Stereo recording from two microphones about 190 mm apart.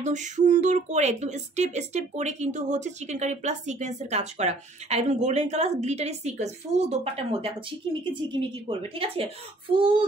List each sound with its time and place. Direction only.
0.0 s speech: 40° right (ahead or behind)